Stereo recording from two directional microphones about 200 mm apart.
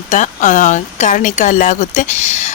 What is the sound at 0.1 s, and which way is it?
A woman's voice, 40° left (ahead or behind).